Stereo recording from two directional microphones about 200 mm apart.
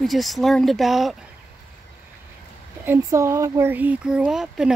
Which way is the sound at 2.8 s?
10° right (ahead or behind).